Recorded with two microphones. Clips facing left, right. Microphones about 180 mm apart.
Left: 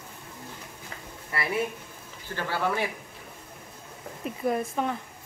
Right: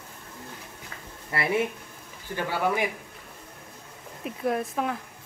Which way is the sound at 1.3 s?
25° right (ahead or behind).